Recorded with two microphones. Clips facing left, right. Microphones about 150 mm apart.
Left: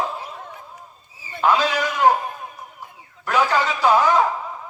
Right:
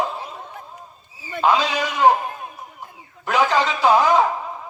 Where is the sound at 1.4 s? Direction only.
15° right (ahead or behind).